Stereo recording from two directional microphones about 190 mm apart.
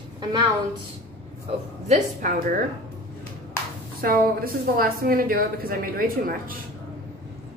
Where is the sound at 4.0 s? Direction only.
50° right (ahead or behind).